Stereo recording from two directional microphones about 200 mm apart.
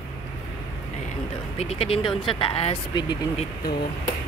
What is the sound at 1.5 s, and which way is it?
Speech, 30° left (ahead or behind).